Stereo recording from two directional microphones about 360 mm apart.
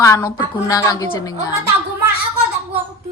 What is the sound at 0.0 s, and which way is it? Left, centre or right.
A woman's voice, centre.